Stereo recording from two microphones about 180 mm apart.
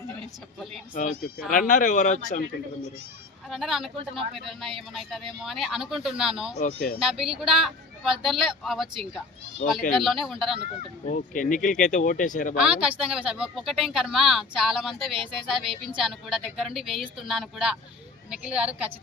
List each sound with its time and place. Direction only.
0.9 s speech: 50° left (ahead or behind)
3.5 s speech: centre (ahead or behind)
4.1 s speech: 30° right (ahead or behind)
4.6 s speech: centre (ahead or behind)
6.6 s speech: 50° left (ahead or behind)
7.0 s speech: 5° right (ahead or behind)
9.9 s speech: centre (ahead or behind)
11.1 s speech: 50° left (ahead or behind)
12.5 s a woman's voice: 5° right (ahead or behind)